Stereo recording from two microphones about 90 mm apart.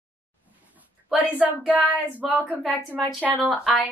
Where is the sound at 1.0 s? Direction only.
20° right (ahead or behind).